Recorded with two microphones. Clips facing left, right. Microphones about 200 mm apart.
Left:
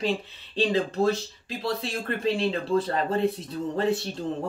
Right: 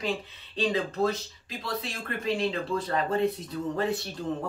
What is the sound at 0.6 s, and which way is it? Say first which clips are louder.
Speech: left 3 dB; 30° left (ahead or behind).